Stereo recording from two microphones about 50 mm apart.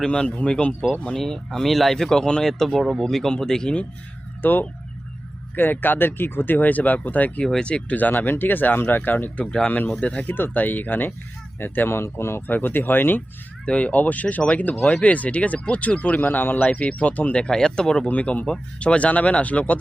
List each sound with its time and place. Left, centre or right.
0.0 s speech: centre
2.5 s speech: centre
4.4 s speech: left
7.6 s speech: left
7.9 s speech: left
9.4 s speech: centre
9.6 s speech: left
10.2 s speech: left
12.5 s speech: left
13.7 s speech: left
16.2 s speech: left; by 18.1 s centre
18.1 s speech: left